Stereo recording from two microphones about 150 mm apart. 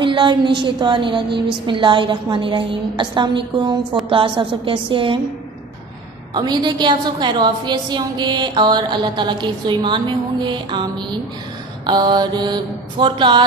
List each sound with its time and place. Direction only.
0.0 s a woman's voice: 30° right (ahead or behind)
6.3 s a woman's voice: 30° right (ahead or behind)